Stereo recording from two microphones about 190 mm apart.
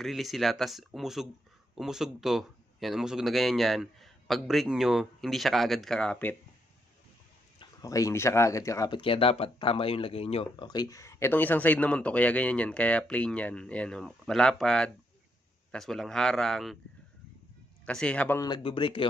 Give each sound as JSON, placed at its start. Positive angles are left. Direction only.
{"t": 0.0, "sound": "a man's voice", "side_deg": 0}
{"t": 7.5, "sound": "a man's voice", "side_deg": 15}
{"t": 17.8, "sound": "speech", "side_deg": 5}
{"t": 18.4, "sound": "speech", "side_deg": 25}